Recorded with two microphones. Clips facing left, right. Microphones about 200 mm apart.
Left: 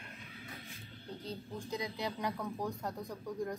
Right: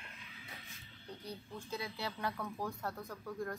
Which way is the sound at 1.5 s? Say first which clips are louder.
Left 3 dB; 15° left (ahead or behind).